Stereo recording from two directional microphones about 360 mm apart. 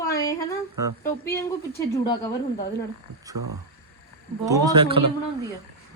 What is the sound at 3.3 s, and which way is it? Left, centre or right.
Speech, right.